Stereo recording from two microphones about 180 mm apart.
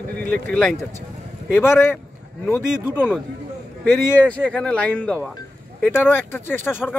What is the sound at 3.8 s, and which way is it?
Speech, 10° left (ahead or behind).